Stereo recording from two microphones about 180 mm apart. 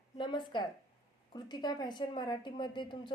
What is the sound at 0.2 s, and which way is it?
A woman's voice, 25° left (ahead or behind).